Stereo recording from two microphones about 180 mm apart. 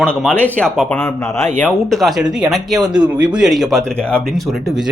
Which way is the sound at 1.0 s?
10° left (ahead or behind).